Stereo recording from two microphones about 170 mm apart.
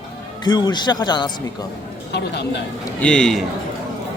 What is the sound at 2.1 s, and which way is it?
Speech, 90° left.